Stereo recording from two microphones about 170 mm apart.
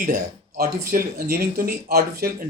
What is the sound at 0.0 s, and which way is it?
Speech, 55° right (ahead or behind).